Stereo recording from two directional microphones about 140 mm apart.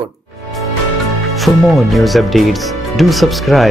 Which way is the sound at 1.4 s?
Centre (ahead or behind).